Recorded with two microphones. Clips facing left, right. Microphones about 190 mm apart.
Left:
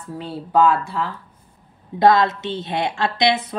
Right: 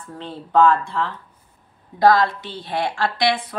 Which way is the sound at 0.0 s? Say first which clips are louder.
Left 3 dB; 10° left (ahead or behind).